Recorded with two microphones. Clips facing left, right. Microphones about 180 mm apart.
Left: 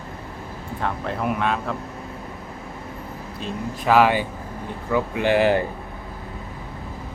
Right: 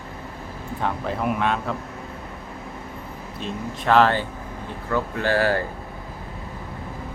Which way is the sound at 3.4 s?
Centre (ahead or behind).